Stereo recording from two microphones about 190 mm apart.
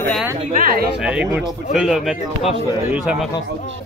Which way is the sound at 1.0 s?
5° right (ahead or behind).